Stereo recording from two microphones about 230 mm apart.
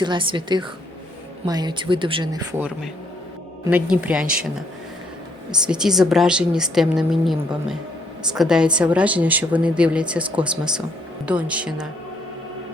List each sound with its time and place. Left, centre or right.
0.0 s a woman's voice: right; by 4.4 s centre
5.5 s a woman's voice: centre